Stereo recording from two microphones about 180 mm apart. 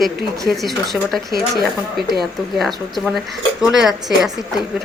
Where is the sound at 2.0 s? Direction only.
60° right (ahead or behind).